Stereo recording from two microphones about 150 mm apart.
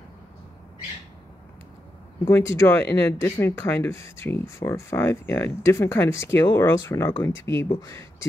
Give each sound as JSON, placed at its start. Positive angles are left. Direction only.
{"t": 2.2, "sound": "speech", "side_deg": 15}